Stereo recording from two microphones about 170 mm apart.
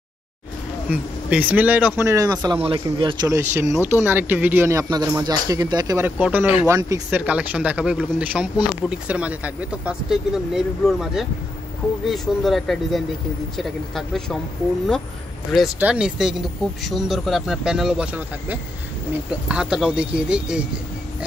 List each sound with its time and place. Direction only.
0.8 s speech: 10° right (ahead or behind); by 3.3 s 30° right (ahead or behind)
3.3 s speech: 15° right (ahead or behind)
6.6 s speech: 20° right (ahead or behind); by 14.4 s centre (ahead or behind)
15.5 s speech: 5° right (ahead or behind)